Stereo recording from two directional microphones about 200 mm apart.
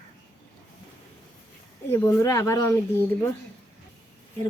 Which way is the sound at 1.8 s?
15° left (ahead or behind).